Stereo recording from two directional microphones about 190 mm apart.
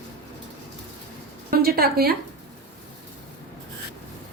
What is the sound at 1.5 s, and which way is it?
Speech, 50° right (ahead or behind).